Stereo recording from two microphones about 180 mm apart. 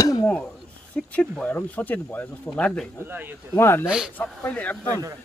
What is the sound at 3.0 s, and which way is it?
Speech, 10° right (ahead or behind).